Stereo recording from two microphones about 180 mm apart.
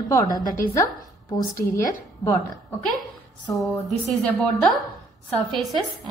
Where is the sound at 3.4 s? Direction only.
10° left (ahead or behind).